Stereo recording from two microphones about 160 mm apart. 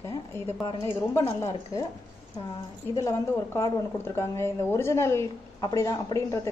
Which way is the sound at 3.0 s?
20° left (ahead or behind).